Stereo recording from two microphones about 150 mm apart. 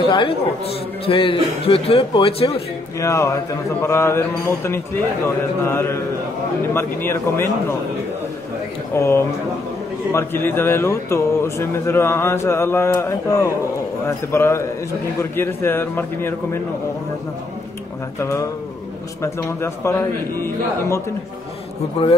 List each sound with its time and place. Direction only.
0.0 s a man's voice: 35° left (ahead or behind)
3.0 s speech: 20° left (ahead or behind)
8.9 s speech: 20° left (ahead or behind)
19.2 s speech: 20° left (ahead or behind)
22.0 s a man's voice: 40° left (ahead or behind)